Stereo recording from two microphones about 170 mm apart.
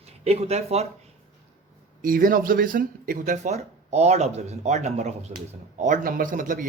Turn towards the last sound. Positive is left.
turn(degrees=-50)  # may be behind; listen again after turning